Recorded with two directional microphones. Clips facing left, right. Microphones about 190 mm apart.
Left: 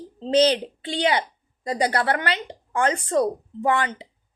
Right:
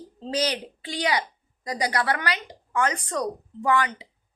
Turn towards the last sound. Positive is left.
turn(degrees=30)  # may be behind; listen again after turning